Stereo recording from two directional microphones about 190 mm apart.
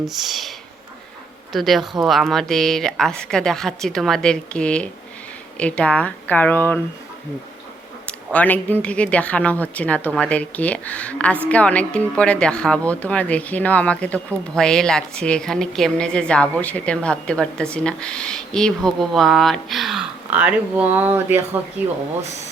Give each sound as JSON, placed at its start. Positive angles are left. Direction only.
{"t": 0.0, "sound": "speech", "side_deg": 0}
{"t": 1.5, "sound": "speech", "side_deg": 0}
{"t": 8.3, "sound": "speech", "side_deg": 10}